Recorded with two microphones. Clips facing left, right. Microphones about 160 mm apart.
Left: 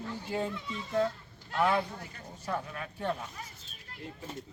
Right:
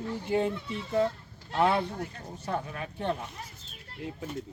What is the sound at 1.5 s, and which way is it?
Speech, 30° right (ahead or behind).